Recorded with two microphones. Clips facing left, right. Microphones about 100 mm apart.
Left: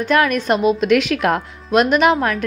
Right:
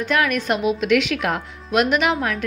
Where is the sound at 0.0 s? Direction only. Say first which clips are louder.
Left 4 dB; 40° left (ahead or behind).